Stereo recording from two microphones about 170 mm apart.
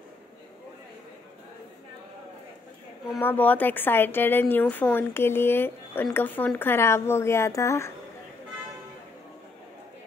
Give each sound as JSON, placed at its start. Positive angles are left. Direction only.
{"t": 3.2, "sound": "a woman's voice", "side_deg": 10}